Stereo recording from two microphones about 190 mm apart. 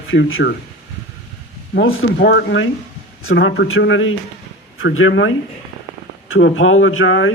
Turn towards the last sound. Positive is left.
turn(degrees=90)